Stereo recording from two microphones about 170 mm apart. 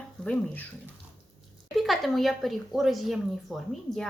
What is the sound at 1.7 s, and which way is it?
Speech, centre (ahead or behind).